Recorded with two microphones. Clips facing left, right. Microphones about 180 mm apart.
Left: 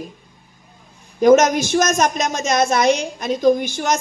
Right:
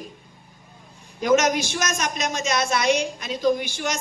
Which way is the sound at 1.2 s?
45° left (ahead or behind).